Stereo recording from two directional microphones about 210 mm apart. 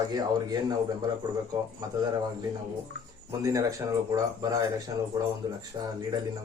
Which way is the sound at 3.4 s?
15° right (ahead or behind).